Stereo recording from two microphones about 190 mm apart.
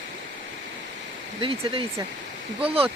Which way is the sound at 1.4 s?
25° right (ahead or behind).